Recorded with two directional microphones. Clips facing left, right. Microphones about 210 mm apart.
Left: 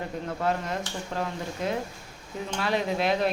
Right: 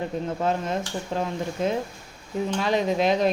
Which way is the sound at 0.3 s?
25° right (ahead or behind).